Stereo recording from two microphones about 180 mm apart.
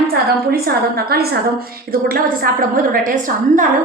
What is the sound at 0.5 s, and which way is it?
A woman's voice, 60° right (ahead or behind).